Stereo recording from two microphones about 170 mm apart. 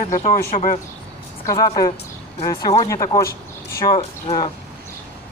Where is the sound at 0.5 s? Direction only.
50° left (ahead or behind).